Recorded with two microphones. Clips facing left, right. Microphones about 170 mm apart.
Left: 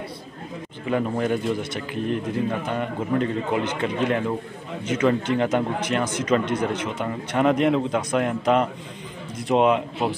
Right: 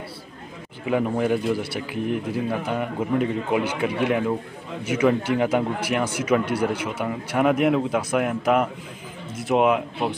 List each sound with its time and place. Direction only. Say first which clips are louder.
0.8 s a man's voice: right 1 dB; 15° right (ahead or behind)